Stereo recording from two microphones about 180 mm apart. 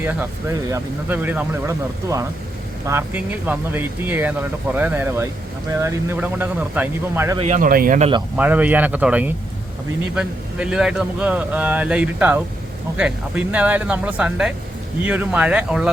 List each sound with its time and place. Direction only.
0.7 s speech: 10° right (ahead or behind)
7.3 s speech: 40° right (ahead or behind)
8.4 s speech: 10° right (ahead or behind)